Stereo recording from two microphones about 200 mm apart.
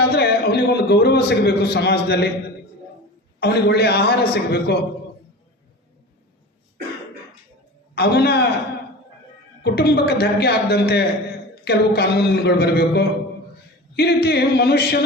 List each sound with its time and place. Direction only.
0.0 s a man's voice: 55° left (ahead or behind)
3.4 s a man's voice: 55° left (ahead or behind)
7.9 s a man's voice: 55° left (ahead or behind)
9.6 s a man's voice: 55° left (ahead or behind)